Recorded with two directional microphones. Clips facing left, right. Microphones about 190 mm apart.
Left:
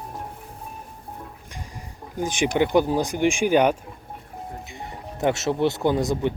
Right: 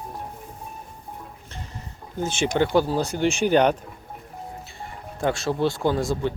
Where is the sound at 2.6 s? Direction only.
15° left (ahead or behind).